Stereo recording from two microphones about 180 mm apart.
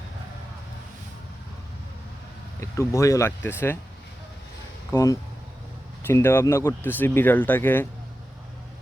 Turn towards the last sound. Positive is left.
turn(degrees=10)  # may be behind; listen again after turning